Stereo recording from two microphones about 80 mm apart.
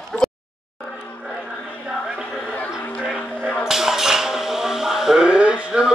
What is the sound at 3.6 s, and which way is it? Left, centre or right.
Music, centre.